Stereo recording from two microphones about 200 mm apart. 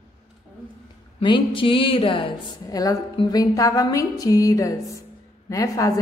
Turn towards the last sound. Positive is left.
turn(degrees=15)  # may be behind; listen again after turning